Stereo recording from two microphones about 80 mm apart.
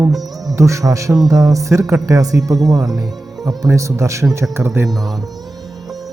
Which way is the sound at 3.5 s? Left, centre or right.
Right.